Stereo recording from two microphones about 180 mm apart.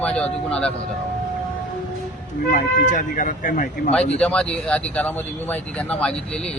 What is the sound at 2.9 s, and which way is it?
Speech, 45° left (ahead or behind).